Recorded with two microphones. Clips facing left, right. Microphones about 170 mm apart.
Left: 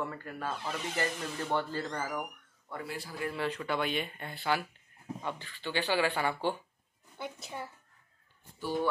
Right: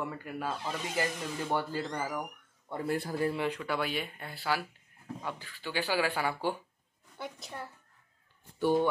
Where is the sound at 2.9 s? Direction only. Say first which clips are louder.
Right 10 dB; 50° right (ahead or behind).